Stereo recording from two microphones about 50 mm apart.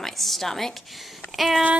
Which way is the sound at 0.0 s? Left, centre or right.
Centre.